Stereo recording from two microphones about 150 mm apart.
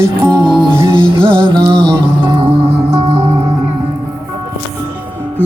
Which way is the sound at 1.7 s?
5° left (ahead or behind).